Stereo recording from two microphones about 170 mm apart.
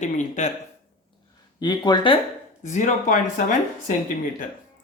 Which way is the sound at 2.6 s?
45° left (ahead or behind).